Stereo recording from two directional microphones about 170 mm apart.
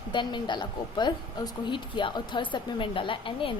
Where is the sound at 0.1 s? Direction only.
25° left (ahead or behind).